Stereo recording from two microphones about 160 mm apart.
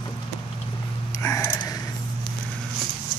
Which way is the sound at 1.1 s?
20° left (ahead or behind).